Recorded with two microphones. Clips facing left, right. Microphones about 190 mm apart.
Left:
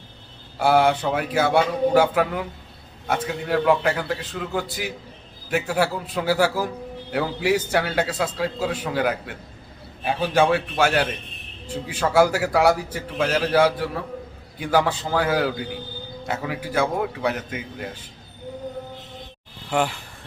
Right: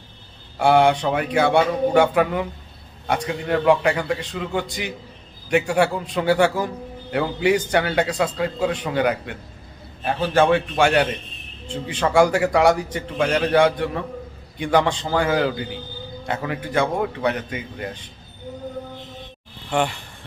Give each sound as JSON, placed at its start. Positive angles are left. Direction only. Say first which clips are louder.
{"t": 0.6, "sound": "a man's voice", "louder": "right 2 dB", "side_deg": 0}
{"t": 19.7, "sound": "a man's voice", "louder": "right 1 dB", "side_deg": 5}